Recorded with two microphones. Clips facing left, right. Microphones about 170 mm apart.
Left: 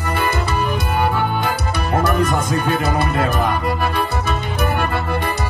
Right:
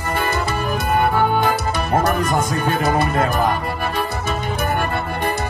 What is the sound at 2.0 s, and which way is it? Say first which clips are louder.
Speech: left 1 dB; 45° right (ahead or behind).